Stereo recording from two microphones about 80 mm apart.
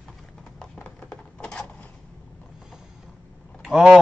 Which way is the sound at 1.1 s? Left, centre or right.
Centre.